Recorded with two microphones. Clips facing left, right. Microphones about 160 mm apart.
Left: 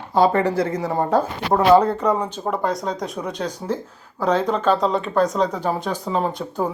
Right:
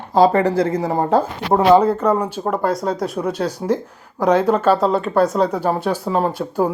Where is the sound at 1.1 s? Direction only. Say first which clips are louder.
Right 3 dB; 25° right (ahead or behind).